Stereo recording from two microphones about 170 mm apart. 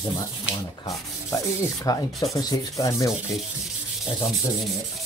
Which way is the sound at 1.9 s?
20° left (ahead or behind).